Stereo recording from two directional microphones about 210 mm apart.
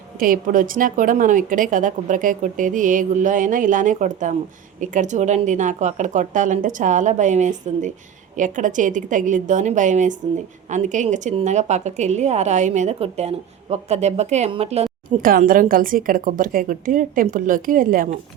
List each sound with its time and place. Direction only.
0.2 s a woman's voice: 40° right (ahead or behind)
15.2 s a woman's voice: 40° right (ahead or behind)